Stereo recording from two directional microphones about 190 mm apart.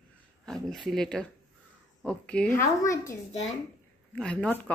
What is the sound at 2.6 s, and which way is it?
Speech, 15° left (ahead or behind).